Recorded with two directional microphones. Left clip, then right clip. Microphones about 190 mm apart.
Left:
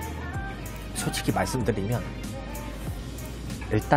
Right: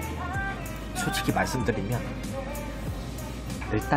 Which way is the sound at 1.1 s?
25° left (ahead or behind).